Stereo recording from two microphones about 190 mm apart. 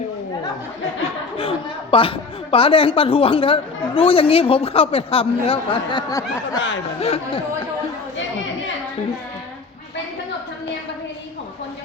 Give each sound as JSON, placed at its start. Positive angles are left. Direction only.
{"t": 1.0, "sound": "speech", "side_deg": 30}
{"t": 7.0, "sound": "speech", "side_deg": 30}